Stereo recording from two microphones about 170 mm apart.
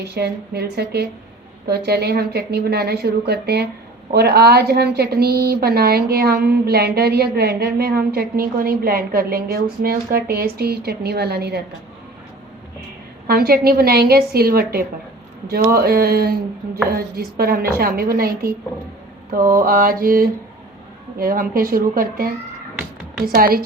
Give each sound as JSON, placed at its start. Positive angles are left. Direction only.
{"t": 0.0, "sound": "a woman's voice", "side_deg": -70}
{"t": 13.2, "sound": "a woman's voice", "side_deg": -60}
{"t": 19.5, "sound": "a woman's voice", "side_deg": -55}